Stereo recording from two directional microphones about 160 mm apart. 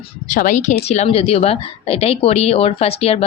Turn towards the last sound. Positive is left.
turn(degrees=40)  # may be behind; listen again after turning